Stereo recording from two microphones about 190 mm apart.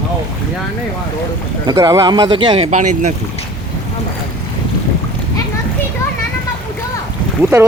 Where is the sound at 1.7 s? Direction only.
20° right (ahead or behind).